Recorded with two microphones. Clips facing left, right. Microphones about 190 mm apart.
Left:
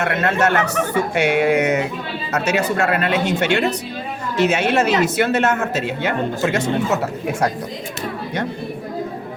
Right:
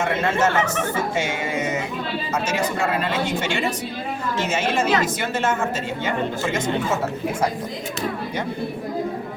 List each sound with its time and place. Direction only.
0.0 s speech: 70° left (ahead or behind)